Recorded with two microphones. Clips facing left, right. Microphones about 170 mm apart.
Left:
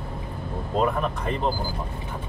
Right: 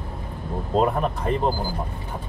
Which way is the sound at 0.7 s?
35° right (ahead or behind).